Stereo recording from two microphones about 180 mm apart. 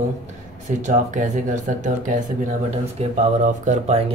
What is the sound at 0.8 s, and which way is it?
Speech, 45° right (ahead or behind).